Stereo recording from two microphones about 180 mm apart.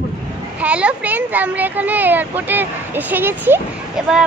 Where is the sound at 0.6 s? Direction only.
5° right (ahead or behind).